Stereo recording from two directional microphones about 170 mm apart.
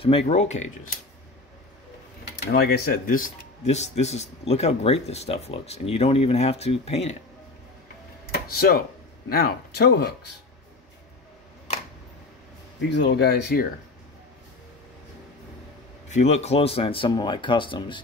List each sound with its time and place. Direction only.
0.0 s speech: 35° left (ahead or behind)
2.5 s speech: 55° left (ahead or behind)
3.6 s speech: 40° left (ahead or behind)
8.3 s a sound: 65° left (ahead or behind)
9.3 s speech: 65° left (ahead or behind)
12.9 s speech: 85° left; by 13.7 s 70° left (ahead or behind)
16.1 s speech: 40° left (ahead or behind)